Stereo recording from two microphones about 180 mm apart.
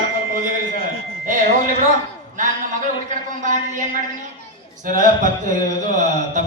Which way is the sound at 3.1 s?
45° right (ahead or behind).